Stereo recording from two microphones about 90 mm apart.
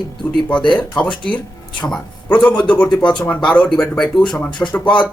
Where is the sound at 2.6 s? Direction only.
15° left (ahead or behind).